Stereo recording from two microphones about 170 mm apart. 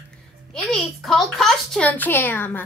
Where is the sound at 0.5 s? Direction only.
Centre (ahead or behind).